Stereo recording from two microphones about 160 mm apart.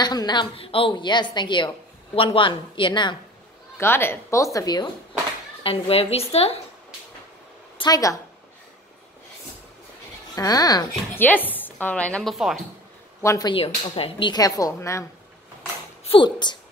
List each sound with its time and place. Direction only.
0.0 s a woman's voice: 25° left (ahead or behind)
3.7 s a woman's voice: 15° left (ahead or behind)
5.6 s a woman's voice: 35° left (ahead or behind)
7.7 s a woman's voice: 25° left (ahead or behind)
10.3 s a woman's voice: 25° left (ahead or behind)
11.1 s a woman's voice: 10° left (ahead or behind)
13.2 s a woman's voice: 20° left (ahead or behind)
16.0 s speech: 35° left (ahead or behind)